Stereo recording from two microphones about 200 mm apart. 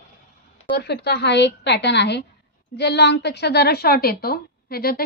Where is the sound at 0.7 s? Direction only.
55° left (ahead or behind).